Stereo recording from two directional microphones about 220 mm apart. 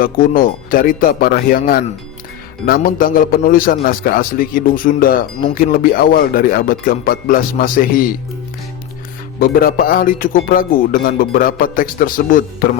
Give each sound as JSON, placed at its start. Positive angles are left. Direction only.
{"t": 0.0, "sound": "music", "side_deg": 40}
{"t": 9.4, "sound": "music", "side_deg": 40}